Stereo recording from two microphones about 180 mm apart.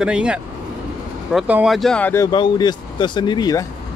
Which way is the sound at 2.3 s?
25° left (ahead or behind).